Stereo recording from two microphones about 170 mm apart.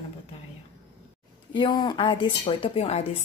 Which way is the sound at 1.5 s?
25° left (ahead or behind).